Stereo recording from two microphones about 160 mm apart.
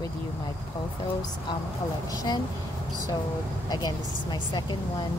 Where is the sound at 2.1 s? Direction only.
20° left (ahead or behind).